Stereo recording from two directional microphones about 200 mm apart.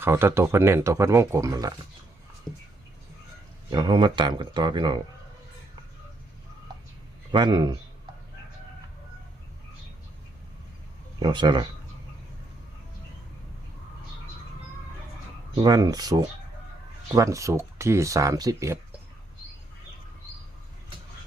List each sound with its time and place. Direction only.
0.0 s speech: 10° right (ahead or behind)
2.5 s a sound: centre (ahead or behind)
3.7 s speech: 20° right (ahead or behind)
7.3 s speech: 20° right (ahead or behind)
11.2 s speech: 25° right (ahead or behind)
15.6 s speech: 20° right (ahead or behind)